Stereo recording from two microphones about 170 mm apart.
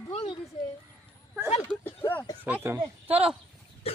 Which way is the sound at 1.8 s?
10° left (ahead or behind).